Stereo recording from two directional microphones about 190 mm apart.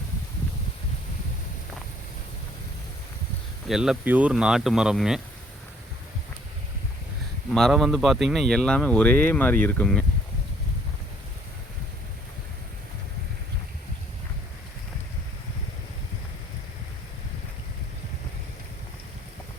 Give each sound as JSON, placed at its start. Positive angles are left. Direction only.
{"t": 3.7, "sound": "speech", "side_deg": -5}
{"t": 7.5, "sound": "speech", "side_deg": 0}